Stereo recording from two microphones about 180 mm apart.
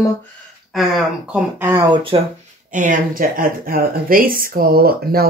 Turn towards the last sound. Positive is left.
turn(degrees=-55)  # may be behind; listen again after turning